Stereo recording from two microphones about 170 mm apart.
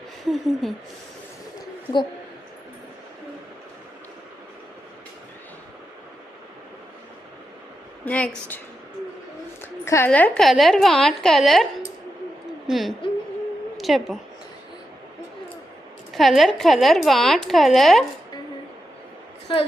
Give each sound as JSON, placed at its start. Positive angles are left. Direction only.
{"t": 0.3, "sound": "a woman's voice", "side_deg": 0}
{"t": 8.0, "sound": "a woman's voice", "side_deg": 5}
{"t": 9.8, "sound": "a woman's voice", "side_deg": 15}
{"t": 16.1, "sound": "a woman's voice", "side_deg": 0}
{"t": 19.5, "sound": "a woman's voice", "side_deg": 30}